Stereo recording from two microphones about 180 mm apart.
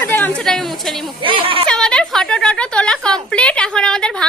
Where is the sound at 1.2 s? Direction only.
30° right (ahead or behind).